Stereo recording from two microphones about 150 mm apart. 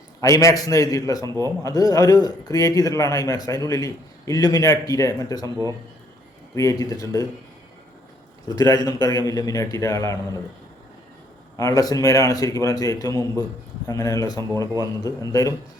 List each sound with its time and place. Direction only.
0.2 s a man's voice: 20° left (ahead or behind)
6.5 s a man's voice: 20° left (ahead or behind)
8.4 s a man's voice: 25° left (ahead or behind)
11.5 s a man's voice: 20° left (ahead or behind)